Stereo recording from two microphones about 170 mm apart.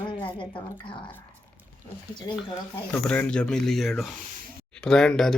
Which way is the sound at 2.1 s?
25° left (ahead or behind).